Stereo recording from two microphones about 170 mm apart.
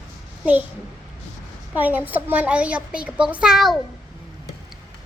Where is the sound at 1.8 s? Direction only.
10° right (ahead or behind).